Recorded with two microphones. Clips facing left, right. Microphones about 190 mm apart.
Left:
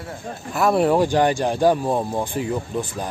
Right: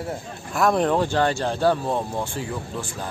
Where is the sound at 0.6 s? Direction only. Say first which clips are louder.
Left 3 dB; 5° left (ahead or behind).